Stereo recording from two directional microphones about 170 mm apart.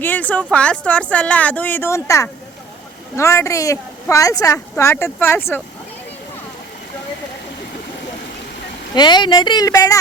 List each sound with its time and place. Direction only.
0.0 s speech: 10° left (ahead or behind)
9.0 s speech: 25° left (ahead or behind)